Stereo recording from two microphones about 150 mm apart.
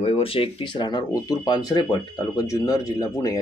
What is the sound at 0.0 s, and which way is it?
Speech, 40° left (ahead or behind).